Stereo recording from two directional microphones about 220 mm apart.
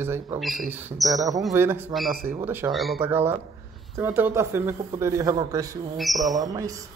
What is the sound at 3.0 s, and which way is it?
A man's voice, 10° right (ahead or behind).